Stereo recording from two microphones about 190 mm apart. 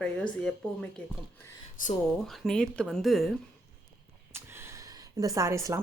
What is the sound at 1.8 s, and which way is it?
Speech, 45° left (ahead or behind).